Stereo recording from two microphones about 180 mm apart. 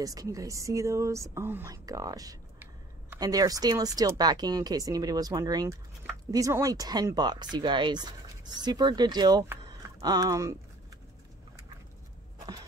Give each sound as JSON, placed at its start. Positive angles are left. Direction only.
{"t": 0.0, "sound": "speech", "side_deg": -20}